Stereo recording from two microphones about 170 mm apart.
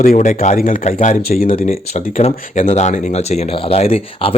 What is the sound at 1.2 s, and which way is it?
Speech, 60° left (ahead or behind).